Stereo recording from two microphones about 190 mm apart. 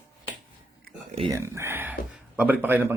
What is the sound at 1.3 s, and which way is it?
A man's voice, 15° right (ahead or behind).